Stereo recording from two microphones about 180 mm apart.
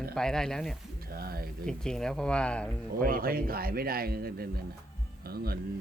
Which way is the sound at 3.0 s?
55° right (ahead or behind).